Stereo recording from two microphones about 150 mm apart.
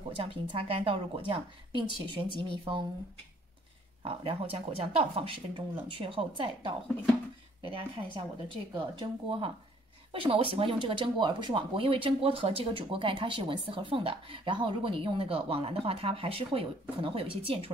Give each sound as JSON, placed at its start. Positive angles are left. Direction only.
{"t": 0.2, "sound": "speech", "side_deg": -40}
{"t": 4.0, "sound": "speech", "side_deg": -40}